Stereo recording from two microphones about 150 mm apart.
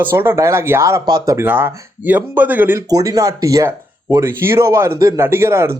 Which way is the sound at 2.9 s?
25° right (ahead or behind).